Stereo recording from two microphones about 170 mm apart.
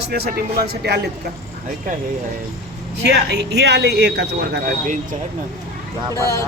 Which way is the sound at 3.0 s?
85° right.